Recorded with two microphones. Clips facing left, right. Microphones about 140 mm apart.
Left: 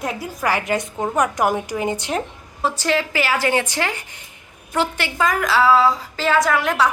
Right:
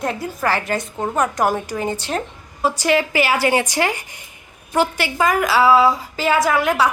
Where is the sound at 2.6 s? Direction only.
10° right (ahead or behind).